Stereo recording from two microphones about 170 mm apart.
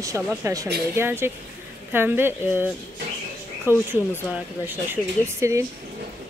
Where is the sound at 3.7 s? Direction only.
10° right (ahead or behind).